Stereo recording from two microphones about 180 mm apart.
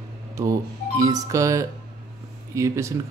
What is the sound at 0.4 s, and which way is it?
Speech, 20° right (ahead or behind).